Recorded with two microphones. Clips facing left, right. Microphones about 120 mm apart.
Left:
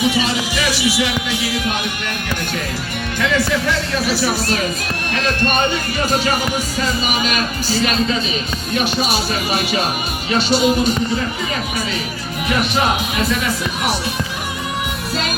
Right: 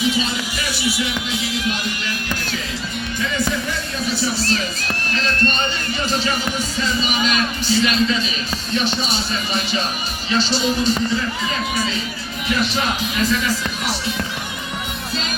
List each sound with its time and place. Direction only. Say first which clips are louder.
0.0 s music: left 3 dB; 70° left (ahead or behind)
3.2 s speech: left 5 dB; 75° left (ahead or behind)
5.1 s music: left 4 dB; 55° left (ahead or behind)
6.7 s speech: even; 50° left (ahead or behind)
8.7 s music: left 3 dB; 60° left (ahead or behind)
13.1 s speech: left 1 dB; 70° left (ahead or behind)